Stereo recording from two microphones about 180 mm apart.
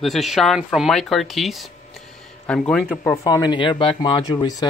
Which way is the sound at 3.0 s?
15° left (ahead or behind).